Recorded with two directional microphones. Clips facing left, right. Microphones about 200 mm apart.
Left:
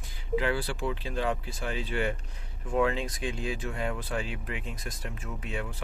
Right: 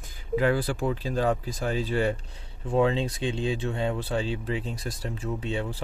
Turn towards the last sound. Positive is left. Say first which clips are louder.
# right 6 dB
turn(degrees=-30)  # may be behind; listen again after turning